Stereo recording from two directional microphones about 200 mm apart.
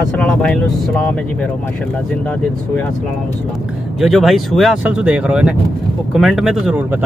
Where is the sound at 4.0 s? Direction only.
Centre (ahead or behind).